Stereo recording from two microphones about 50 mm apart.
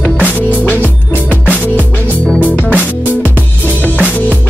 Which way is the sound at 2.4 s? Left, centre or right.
Left.